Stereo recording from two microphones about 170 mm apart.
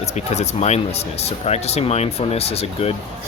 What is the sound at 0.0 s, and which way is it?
Speech, 40° left (ahead or behind).